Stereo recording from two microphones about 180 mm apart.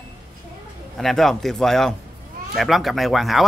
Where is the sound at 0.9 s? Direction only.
Centre (ahead or behind).